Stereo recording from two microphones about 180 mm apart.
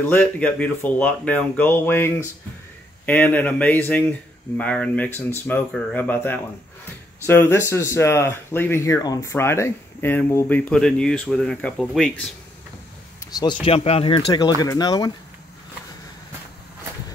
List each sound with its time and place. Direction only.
0.1 s speech: 10° left (ahead or behind)
13.2 s speech: 20° left (ahead or behind)
13.7 s speech: 35° left (ahead or behind)